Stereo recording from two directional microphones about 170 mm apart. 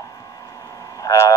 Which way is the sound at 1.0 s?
15° left (ahead or behind).